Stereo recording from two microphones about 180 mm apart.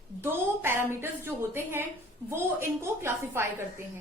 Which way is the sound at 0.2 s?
15° right (ahead or behind).